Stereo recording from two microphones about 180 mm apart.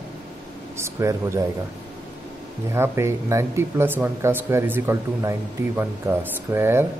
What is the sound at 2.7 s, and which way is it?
Speech, 15° right (ahead or behind).